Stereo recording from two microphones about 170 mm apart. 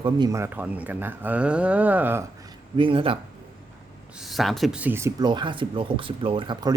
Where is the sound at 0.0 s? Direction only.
25° right (ahead or behind).